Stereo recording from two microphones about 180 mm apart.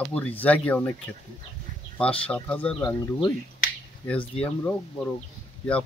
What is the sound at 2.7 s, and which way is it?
Speech, 20° left (ahead or behind).